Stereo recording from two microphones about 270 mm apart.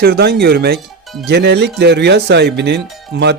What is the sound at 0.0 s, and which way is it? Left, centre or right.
Speech, right.